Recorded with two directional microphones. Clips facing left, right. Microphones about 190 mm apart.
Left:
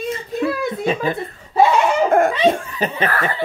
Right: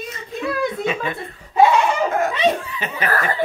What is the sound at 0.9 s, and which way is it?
Speech, 35° left (ahead or behind).